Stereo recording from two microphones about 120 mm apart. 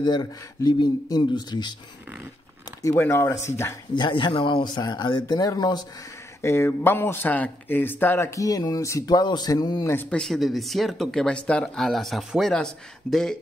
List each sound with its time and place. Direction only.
0.0 s speech: 35° left (ahead or behind)
2.8 s speech: 25° left (ahead or behind)
3.9 s speech: 40° left (ahead or behind)
6.4 s speech: 20° left (ahead or behind)
8.4 s speech: 30° left (ahead or behind)
9.8 s speech: 15° left (ahead or behind)